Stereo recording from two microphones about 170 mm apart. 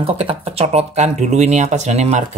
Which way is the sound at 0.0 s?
35° right (ahead or behind).